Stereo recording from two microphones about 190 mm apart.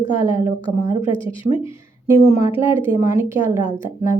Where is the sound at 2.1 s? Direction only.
15° right (ahead or behind).